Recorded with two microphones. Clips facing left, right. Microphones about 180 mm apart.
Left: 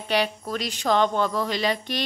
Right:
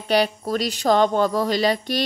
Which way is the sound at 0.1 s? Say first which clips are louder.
Right 5 dB; 40° right (ahead or behind).